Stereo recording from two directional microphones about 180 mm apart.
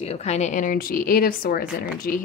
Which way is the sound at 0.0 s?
35° left (ahead or behind).